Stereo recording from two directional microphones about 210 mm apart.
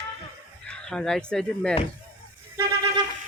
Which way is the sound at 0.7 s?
5° left (ahead or behind).